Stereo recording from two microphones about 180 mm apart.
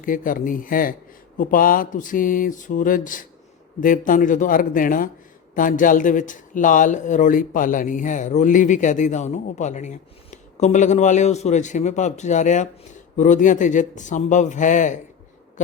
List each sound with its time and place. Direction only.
0.0 s speech: 50° left (ahead or behind)